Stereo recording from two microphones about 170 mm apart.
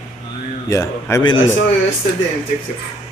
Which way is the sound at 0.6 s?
15° left (ahead or behind).